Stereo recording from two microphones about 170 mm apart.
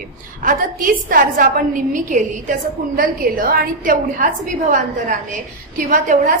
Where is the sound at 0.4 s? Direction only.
55° right (ahead or behind).